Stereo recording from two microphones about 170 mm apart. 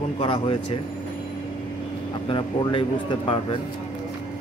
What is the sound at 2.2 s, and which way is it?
Speech, 30° left (ahead or behind).